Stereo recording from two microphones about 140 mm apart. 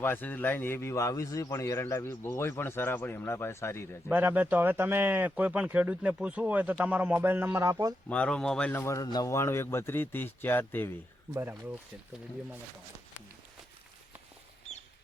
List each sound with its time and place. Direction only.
0.0 s a man's voice: 15° left (ahead or behind)
4.1 s speech: 15° right (ahead or behind)
8.1 s a man's voice: 10° left (ahead or behind)
11.3 s speech: 15° right (ahead or behind)